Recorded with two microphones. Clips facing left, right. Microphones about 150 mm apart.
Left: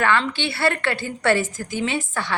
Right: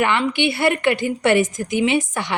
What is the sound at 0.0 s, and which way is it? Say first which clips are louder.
A woman's voice: right 3 dB; 15° right (ahead or behind).